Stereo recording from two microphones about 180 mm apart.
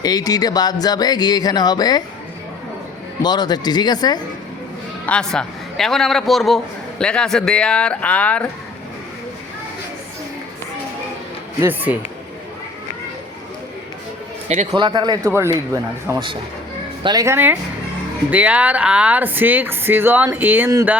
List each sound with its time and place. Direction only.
0.0 s speech: 20° left (ahead or behind)
3.2 s speech: 25° left (ahead or behind)
5.0 s a man's voice: 5° left (ahead or behind)
11.6 s speech: 10° right (ahead or behind)
14.4 s a man's voice: 40° right (ahead or behind)
14.7 s speech: 25° right (ahead or behind)